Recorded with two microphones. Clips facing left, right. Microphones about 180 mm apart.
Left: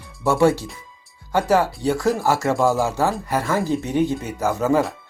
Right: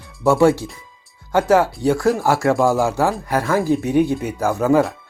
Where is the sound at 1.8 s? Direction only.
15° right (ahead or behind).